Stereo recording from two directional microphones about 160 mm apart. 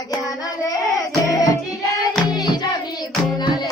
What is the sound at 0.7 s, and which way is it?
Music, 20° left (ahead or behind).